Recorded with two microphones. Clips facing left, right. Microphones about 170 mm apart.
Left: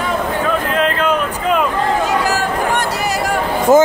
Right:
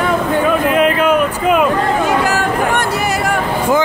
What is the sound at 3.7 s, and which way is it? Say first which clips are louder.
Speech: left 6 dB; 45° left (ahead or behind).